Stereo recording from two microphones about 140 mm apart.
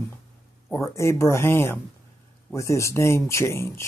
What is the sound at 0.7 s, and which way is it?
Speech, 20° left (ahead or behind).